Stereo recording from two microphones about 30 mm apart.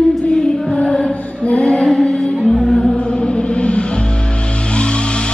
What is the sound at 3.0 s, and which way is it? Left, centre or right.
Music, left.